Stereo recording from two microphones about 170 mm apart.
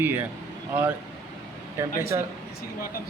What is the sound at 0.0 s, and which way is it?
Speech, 10° right (ahead or behind).